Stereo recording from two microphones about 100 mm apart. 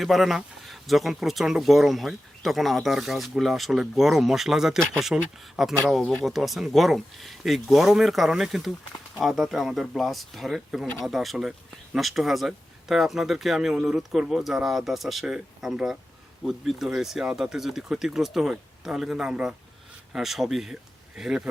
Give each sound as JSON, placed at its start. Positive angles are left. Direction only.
{"t": 0.0, "sound": "speech", "side_deg": 0}